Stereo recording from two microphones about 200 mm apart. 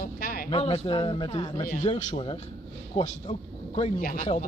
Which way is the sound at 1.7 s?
35° left (ahead or behind).